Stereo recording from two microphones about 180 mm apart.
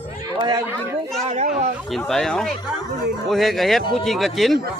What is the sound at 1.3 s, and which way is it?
Speech, 40° right (ahead or behind).